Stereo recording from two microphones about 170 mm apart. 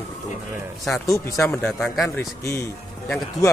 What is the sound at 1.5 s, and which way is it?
Speech, 5° left (ahead or behind).